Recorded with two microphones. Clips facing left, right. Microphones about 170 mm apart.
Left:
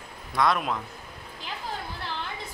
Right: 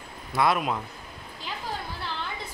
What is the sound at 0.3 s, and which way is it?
Speech, 5° right (ahead or behind).